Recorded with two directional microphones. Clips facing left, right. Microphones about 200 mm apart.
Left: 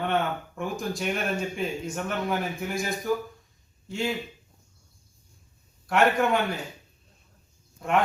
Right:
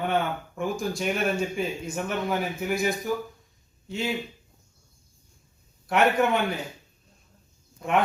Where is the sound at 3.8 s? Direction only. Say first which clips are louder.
Left 1 dB; centre (ahead or behind).